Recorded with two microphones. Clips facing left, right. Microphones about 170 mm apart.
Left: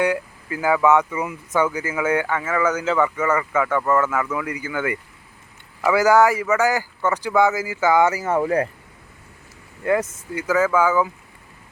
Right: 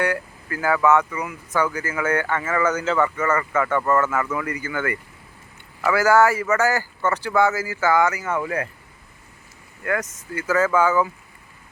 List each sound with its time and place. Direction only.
0.0 s speech: 15° left (ahead or behind); by 8.7 s 35° left (ahead or behind)
9.8 s speech: 25° left (ahead or behind)
10.4 s speech: 10° left (ahead or behind)